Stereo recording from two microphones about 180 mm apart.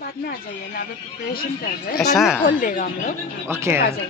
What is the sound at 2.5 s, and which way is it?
Speech, 45° left (ahead or behind).